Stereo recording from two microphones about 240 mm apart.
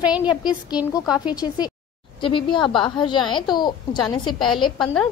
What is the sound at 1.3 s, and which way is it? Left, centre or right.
A woman's voice, centre.